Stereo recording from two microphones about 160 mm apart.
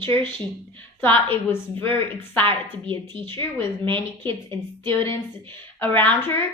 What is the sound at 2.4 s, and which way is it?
Speech, 35° right (ahead or behind).